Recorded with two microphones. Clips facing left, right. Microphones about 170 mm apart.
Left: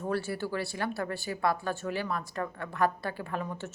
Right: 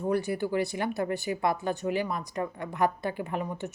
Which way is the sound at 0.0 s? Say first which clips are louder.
Right 4 dB; 15° right (ahead or behind).